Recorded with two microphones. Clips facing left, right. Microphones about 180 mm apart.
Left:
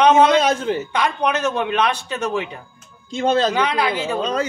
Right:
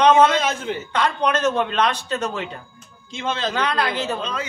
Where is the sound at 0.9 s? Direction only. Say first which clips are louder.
Right 3 dB; 10° left (ahead or behind).